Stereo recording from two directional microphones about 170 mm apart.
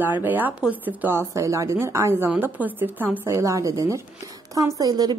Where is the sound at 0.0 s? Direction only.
10° right (ahead or behind).